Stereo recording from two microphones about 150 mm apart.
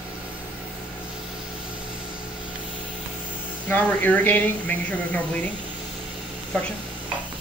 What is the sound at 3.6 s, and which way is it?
A woman's voice, 10° left (ahead or behind).